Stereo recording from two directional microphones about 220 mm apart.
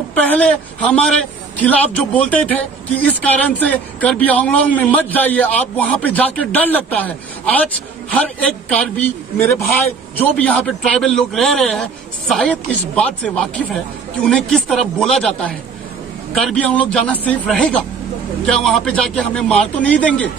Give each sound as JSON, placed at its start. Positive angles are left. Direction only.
{"t": 0.1, "sound": "a man's voice", "side_deg": 5}